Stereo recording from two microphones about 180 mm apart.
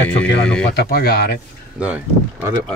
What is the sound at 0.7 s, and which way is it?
Speech, 65° left (ahead or behind).